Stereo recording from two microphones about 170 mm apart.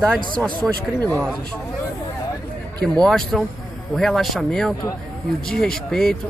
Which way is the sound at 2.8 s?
5° left (ahead or behind).